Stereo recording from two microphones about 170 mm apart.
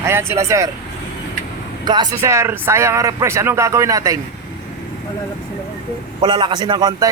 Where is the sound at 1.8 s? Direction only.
25° right (ahead or behind).